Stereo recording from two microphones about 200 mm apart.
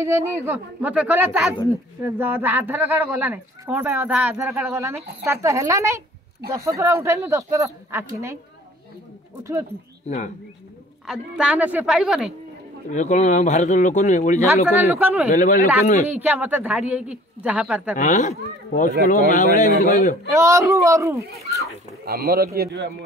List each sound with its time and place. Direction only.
0.0 s speech: 10° right (ahead or behind)
9.4 s speech: 15° right (ahead or behind)
10.0 s speech: 35° left (ahead or behind)
11.1 s a woman's voice: 5° right (ahead or behind)
12.9 s speech: 35° left (ahead or behind)
14.5 s speech: 10° right (ahead or behind)
15.2 s speech: 40° left (ahead or behind)
16.1 s speech: 10° right (ahead or behind)
17.9 s speech: 40° left (ahead or behind)
20.2 s speech: 15° right (ahead or behind)
22.0 s a man's voice: 50° right (ahead or behind)